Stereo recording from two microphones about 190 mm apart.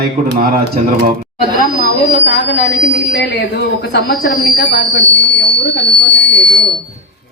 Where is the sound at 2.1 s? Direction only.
65° left (ahead or behind).